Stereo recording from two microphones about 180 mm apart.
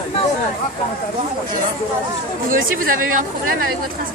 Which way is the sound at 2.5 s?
50° right (ahead or behind).